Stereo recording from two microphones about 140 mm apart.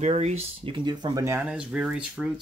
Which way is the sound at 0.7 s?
30° right (ahead or behind).